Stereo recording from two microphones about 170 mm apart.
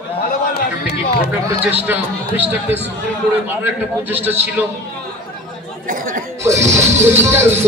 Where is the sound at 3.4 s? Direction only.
10° right (ahead or behind).